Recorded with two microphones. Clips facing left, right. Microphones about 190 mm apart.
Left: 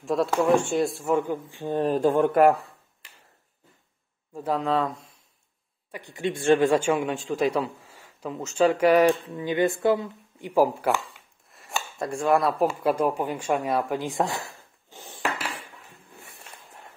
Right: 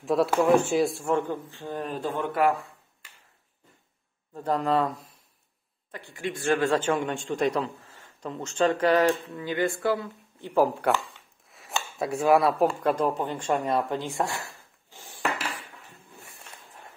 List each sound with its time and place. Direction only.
0.0 s speech: centre (ahead or behind); by 1.8 s 15° left (ahead or behind)
1.8 s speech: 40° left (ahead or behind)
4.3 s speech: 5° left (ahead or behind)
5.9 s speech: 15° left (ahead or behind)